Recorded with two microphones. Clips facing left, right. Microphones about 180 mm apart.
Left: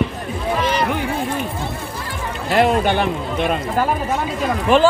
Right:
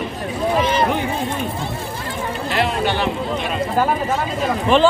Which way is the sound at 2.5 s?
50° left (ahead or behind).